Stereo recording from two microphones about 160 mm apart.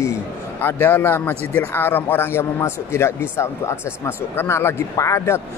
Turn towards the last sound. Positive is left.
turn(degrees=20)  # may be behind; listen again after turning